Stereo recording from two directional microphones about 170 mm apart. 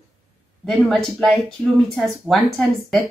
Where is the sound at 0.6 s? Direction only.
Centre (ahead or behind).